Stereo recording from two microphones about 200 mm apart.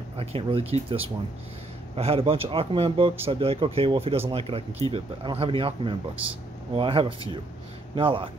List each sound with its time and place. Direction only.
0.2 s speech: 30° right (ahead or behind)